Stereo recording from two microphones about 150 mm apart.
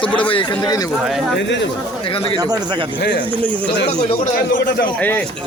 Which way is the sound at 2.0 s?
35° left (ahead or behind).